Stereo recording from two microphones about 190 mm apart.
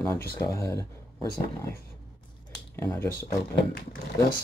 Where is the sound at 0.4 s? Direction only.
15° left (ahead or behind).